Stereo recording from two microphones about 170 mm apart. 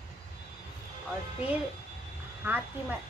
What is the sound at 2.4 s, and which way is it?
Speech, 10° right (ahead or behind).